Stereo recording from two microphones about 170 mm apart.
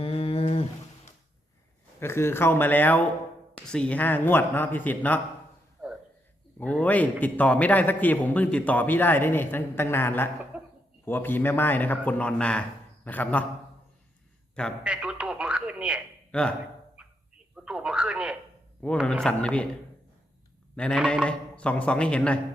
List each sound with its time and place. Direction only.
0.0 s a sound: 35° left (ahead or behind)
2.0 s a man's voice: 15° left (ahead or behind)
6.6 s a man's voice: 10° left (ahead or behind)
10.5 s a sound: 10° right (ahead or behind)
11.0 s a man's voice: 10° left (ahead or behind)
14.8 s radio: 5° right (ahead or behind)
16.3 s a man's voice: 5° left (ahead or behind)
17.0 s a sound: 5° right (ahead or behind)
17.5 s speech: 5° right (ahead or behind)
18.8 s a man's voice: 10° left (ahead or behind)
20.7 s a man's voice: 5° left (ahead or behind)